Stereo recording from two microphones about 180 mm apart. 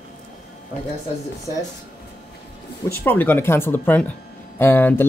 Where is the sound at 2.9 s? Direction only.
10° left (ahead or behind).